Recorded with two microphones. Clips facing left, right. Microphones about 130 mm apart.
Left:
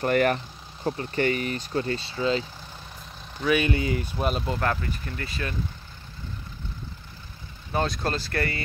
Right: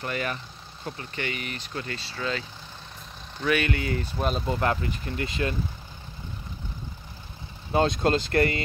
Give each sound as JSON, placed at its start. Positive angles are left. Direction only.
{"t": 0.0, "sound": "speech", "side_deg": 55}
{"t": 0.8, "sound": "speech", "side_deg": 40}
{"t": 3.3, "sound": "speech", "side_deg": 5}
{"t": 3.6, "sound": "speech", "side_deg": 20}
{"t": 4.2, "sound": "speech", "side_deg": 5}
{"t": 4.6, "sound": "speech", "side_deg": -20}
{"t": 7.7, "sound": "speech", "side_deg": -25}